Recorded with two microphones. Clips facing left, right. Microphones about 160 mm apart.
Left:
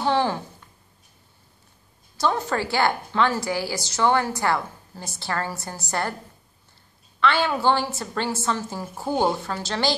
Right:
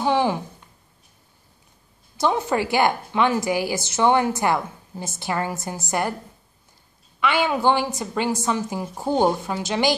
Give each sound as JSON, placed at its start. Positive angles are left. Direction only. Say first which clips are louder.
{"t": 0.0, "sound": "a sound", "louder": "right 2 dB", "side_deg": -15}
{"t": 2.1, "sound": "a woman's voice", "louder": "right 2 dB", "side_deg": -20}
{"t": 7.2, "sound": "a woman's voice", "louder": "right 1 dB", "side_deg": -15}